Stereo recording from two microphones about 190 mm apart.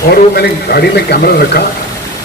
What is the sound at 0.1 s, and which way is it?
Speech, 55° left (ahead or behind).